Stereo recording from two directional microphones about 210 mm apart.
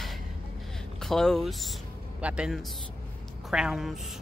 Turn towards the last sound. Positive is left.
turn(degrees=0)  # may be behind; listen again after turning